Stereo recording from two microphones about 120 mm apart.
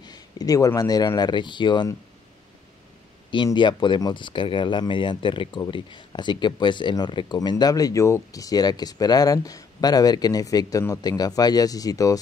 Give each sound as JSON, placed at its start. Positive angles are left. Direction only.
{"t": 0.0, "sound": "speech", "side_deg": 35}
{"t": 3.5, "sound": "speech", "side_deg": 40}